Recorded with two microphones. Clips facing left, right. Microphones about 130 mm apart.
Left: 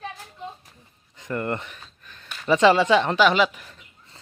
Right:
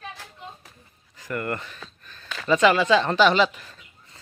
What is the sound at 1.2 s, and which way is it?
Speech, 25° left (ahead or behind).